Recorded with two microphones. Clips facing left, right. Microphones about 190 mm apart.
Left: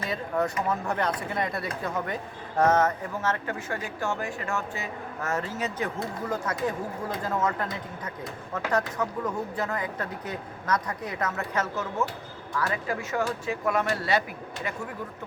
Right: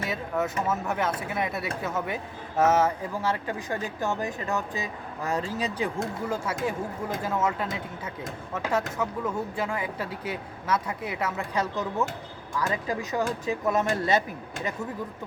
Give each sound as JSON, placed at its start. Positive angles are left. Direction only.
{"t": 0.1, "sound": "speech", "side_deg": -5}